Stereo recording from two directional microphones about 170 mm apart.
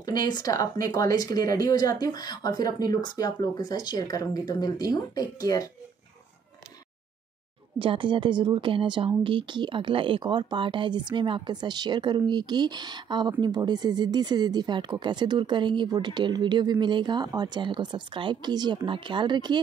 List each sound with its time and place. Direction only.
0.0 s speech: 25° left (ahead or behind)
7.8 s a woman's voice: 30° right (ahead or behind)